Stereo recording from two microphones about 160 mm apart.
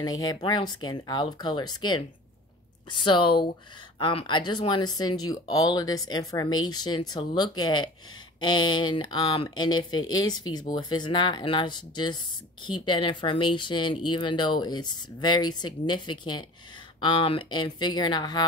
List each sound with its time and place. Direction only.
0.0 s speech: 25° left (ahead or behind)